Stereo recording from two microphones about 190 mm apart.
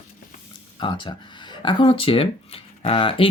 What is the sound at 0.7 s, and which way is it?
Speech, 25° left (ahead or behind).